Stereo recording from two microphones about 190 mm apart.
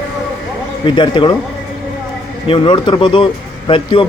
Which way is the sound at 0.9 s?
25° left (ahead or behind).